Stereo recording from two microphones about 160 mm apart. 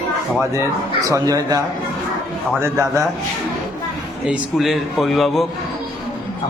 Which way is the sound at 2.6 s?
20° right (ahead or behind).